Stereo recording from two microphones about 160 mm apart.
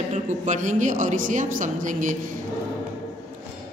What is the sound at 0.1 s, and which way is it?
A woman's voice, 50° right (ahead or behind).